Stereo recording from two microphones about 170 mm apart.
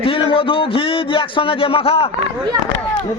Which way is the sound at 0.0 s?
30° left (ahead or behind).